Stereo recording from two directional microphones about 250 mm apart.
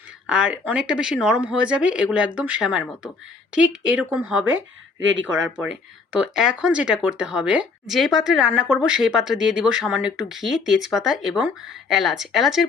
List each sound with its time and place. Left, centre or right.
0.3 s speech: centre
4.5 s speech: right
6.1 s speech: centre